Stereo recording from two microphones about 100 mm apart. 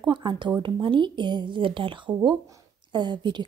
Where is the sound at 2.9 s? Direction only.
45° right (ahead or behind).